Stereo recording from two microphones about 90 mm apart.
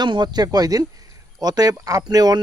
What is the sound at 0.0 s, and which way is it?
Speech, 55° right (ahead or behind).